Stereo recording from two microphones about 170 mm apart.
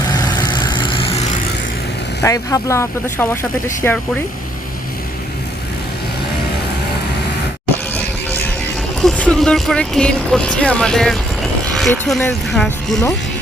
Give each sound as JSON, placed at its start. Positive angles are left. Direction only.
{"t": 0.3, "sound": "vehicle", "side_deg": 25}
{"t": 2.2, "sound": "speech", "side_deg": 20}
{"t": 9.0, "sound": "speech", "side_deg": 5}
{"t": 11.6, "sound": "vehicle", "side_deg": 0}
{"t": 12.5, "sound": "speech", "side_deg": 0}